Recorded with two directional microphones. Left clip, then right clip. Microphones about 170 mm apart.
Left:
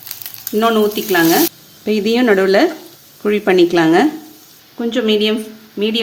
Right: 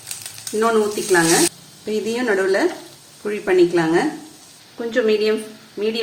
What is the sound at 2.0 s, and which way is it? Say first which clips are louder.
A woman's voice: left 7 dB; 65° left (ahead or behind).